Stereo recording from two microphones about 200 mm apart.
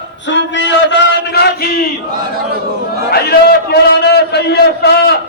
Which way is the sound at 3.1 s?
50° left (ahead or behind).